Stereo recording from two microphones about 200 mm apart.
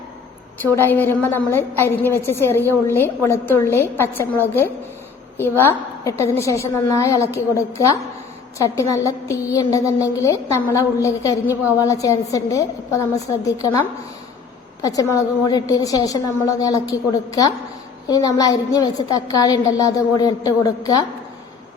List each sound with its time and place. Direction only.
0.6 s a woman's voice: 10° left (ahead or behind)
6.1 s a woman's voice: 15° left (ahead or behind)
14.8 s a woman's voice: 15° left (ahead or behind)